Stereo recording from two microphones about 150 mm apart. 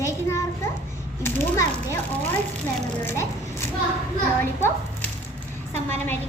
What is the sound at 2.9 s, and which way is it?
A child's voice, 15° left (ahead or behind).